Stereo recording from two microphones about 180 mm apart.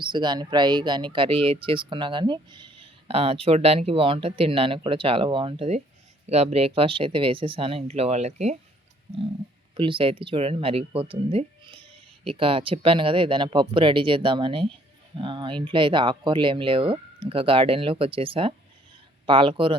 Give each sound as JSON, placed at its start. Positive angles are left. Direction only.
{"t": 0.0, "sound": "speech", "side_deg": -25}
{"t": 9.7, "sound": "speech", "side_deg": -30}